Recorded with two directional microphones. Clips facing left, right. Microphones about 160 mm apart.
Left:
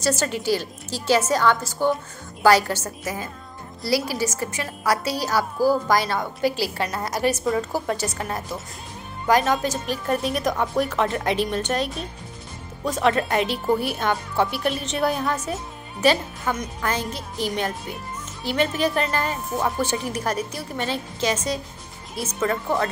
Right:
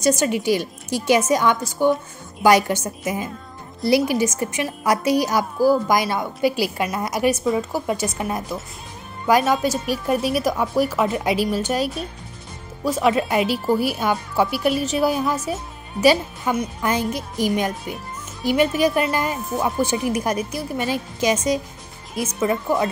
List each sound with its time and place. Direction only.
0.0 s a woman's voice: 15° right (ahead or behind)